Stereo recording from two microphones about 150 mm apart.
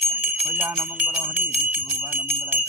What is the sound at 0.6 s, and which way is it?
Jingle bell, 10° right (ahead or behind).